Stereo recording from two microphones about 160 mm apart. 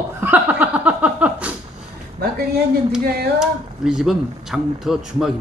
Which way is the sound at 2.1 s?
70° right (ahead or behind).